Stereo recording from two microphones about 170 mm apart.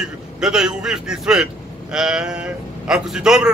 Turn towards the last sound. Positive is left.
turn(degrees=-5)  # may be behind; listen again after turning